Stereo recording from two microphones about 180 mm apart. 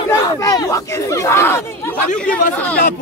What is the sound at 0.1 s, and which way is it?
Speech, 20° left (ahead or behind).